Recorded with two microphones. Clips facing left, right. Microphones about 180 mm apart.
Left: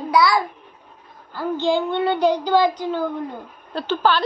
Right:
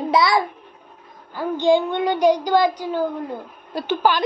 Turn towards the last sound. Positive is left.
turn(degrees=-15)  # may be behind; listen again after turning